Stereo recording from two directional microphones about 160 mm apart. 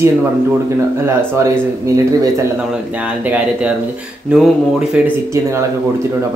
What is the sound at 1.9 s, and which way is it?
Speech, 20° right (ahead or behind).